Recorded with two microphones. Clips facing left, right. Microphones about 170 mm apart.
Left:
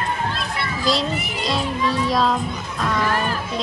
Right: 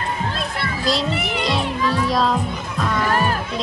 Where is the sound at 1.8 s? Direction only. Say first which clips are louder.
Right 1 dB; 25° left (ahead or behind).